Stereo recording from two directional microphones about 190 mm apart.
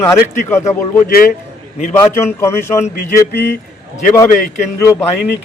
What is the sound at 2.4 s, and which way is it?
Speech, 15° left (ahead or behind).